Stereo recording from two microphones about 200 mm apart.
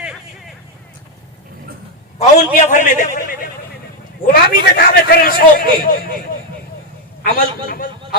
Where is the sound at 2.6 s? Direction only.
40° left (ahead or behind).